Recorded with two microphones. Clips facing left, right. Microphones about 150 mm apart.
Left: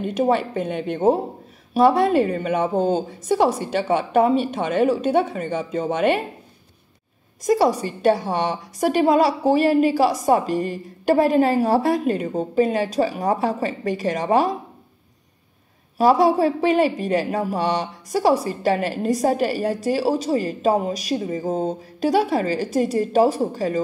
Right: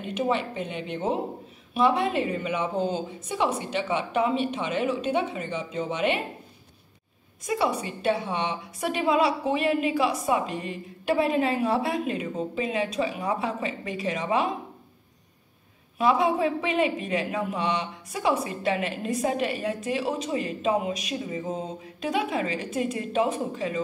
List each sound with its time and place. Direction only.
0.0 s speech: 45° left (ahead or behind)
7.4 s a woman's voice: 40° left (ahead or behind)
16.0 s a woman's voice: 40° left (ahead or behind)